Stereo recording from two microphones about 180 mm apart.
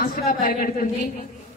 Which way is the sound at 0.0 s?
50° left (ahead or behind).